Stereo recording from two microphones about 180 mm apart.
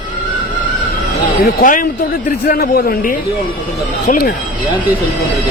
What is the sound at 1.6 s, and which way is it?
A woman's voice, 50° left (ahead or behind).